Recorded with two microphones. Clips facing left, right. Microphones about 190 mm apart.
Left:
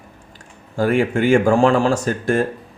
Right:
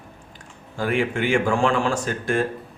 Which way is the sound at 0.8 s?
45° left (ahead or behind).